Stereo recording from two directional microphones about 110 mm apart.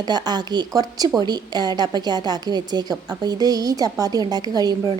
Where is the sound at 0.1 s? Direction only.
40° right (ahead or behind).